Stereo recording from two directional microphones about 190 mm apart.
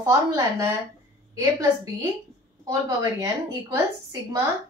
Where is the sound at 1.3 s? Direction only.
20° right (ahead or behind).